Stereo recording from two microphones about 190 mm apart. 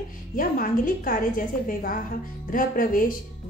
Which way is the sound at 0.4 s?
45° left (ahead or behind).